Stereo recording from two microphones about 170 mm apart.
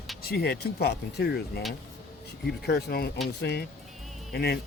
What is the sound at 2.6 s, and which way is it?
Speech, 70° left (ahead or behind).